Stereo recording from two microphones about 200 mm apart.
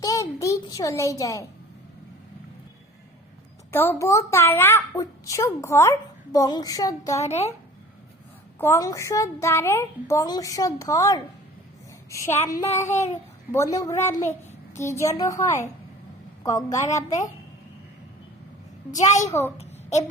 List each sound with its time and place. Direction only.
0.0 s a child's voice: 15° left (ahead or behind)
3.7 s a woman's voice: 10° left (ahead or behind)
7.3 s a child's voice: 30° left (ahead or behind)
8.5 s a child's voice: 10° left (ahead or behind)
18.9 s a child's voice: 35° left (ahead or behind)
19.3 s a child's voice: 15° left (ahead or behind)
19.5 s a sound: 35° left (ahead or behind)